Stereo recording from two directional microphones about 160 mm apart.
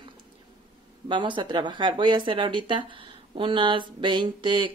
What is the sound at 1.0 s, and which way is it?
Speech, 30° right (ahead or behind).